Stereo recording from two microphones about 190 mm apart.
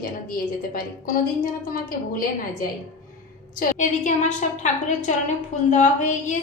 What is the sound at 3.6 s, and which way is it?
A woman's voice, 45° left (ahead or behind).